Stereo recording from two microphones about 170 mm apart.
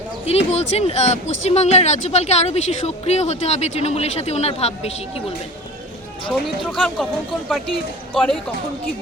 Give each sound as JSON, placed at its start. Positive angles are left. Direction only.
{"t": 0.3, "sound": "speech", "side_deg": 40}
{"t": 6.7, "sound": "speech", "side_deg": 5}